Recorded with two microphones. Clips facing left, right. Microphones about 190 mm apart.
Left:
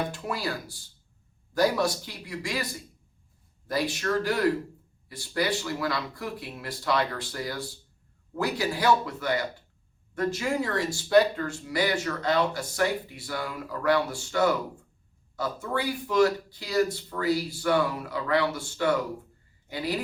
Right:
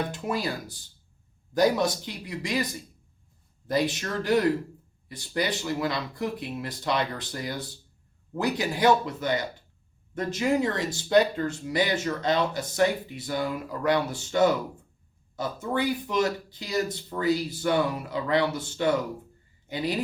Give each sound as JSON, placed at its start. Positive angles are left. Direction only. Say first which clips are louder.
{"t": 0.1, "sound": "speech", "louder": "right 2 dB", "side_deg": -20}
{"t": 3.7, "sound": "speech", "louder": "right 1 dB", "side_deg": -20}